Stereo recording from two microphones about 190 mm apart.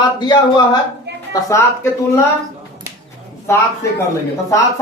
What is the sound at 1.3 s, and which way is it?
Speech, 15° left (ahead or behind).